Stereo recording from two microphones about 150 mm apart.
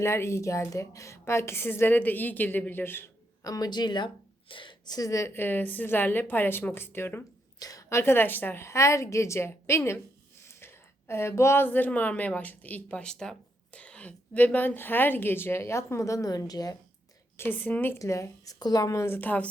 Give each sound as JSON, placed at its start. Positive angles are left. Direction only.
{"t": 0.0, "sound": "a woman's voice", "side_deg": 20}
{"t": 17.3, "sound": "a woman's voice", "side_deg": 15}